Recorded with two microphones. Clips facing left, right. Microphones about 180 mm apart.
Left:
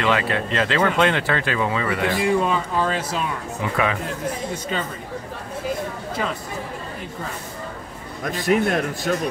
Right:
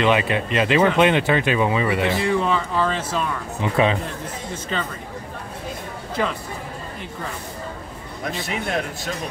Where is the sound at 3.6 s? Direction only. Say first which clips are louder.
Right 4 dB; 25° right (ahead or behind).